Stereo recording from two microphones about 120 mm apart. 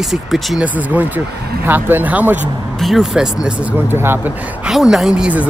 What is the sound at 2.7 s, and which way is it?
Speech, centre (ahead or behind).